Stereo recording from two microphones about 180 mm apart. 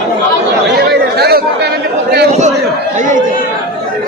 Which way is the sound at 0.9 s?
60° right (ahead or behind).